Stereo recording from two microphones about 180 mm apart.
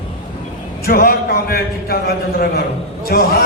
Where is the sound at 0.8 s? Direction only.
55° left (ahead or behind).